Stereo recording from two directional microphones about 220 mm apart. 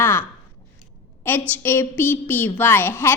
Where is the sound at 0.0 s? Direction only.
10° left (ahead or behind).